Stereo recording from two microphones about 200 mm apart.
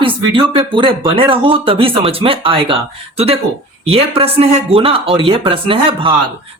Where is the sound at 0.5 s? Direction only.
25° right (ahead or behind).